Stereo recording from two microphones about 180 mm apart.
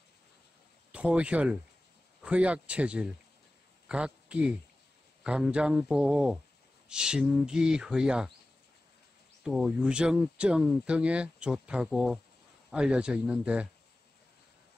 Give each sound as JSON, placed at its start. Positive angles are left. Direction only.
{"t": 0.9, "sound": "speech", "side_deg": -5}
{"t": 9.4, "sound": "speech", "side_deg": 0}